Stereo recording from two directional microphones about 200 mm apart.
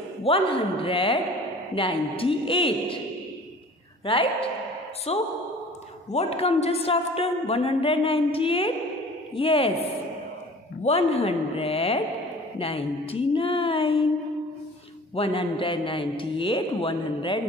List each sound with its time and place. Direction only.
0.2 s a woman's voice: 30° left (ahead or behind)
4.0 s a woman's voice: 25° left (ahead or behind)
10.8 s a woman's voice: 30° left (ahead or behind)
15.1 s a woman's voice: 25° left (ahead or behind)